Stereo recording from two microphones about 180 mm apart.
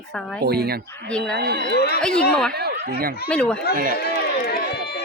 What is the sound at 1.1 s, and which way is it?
Speech, 5° left (ahead or behind).